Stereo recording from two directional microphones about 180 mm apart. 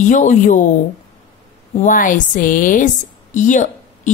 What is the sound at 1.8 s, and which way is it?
A woman's voice, 50° left (ahead or behind).